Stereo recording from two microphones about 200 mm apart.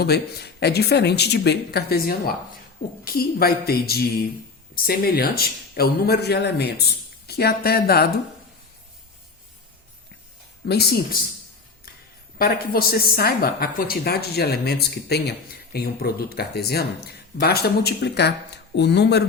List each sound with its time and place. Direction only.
0.0 s a woman's voice: 55° left (ahead or behind)
10.7 s a woman's voice: 55° left (ahead or behind)
12.4 s a woman's voice: 50° left (ahead or behind)